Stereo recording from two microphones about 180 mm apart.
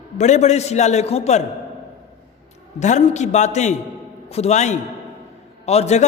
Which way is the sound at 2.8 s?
40° left (ahead or behind).